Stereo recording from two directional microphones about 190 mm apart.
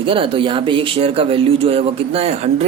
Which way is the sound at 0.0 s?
25° right (ahead or behind).